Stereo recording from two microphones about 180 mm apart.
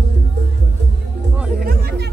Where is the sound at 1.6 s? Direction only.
55° right (ahead or behind).